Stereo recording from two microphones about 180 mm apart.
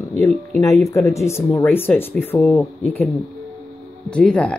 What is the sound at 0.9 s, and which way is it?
Speech, 15° left (ahead or behind).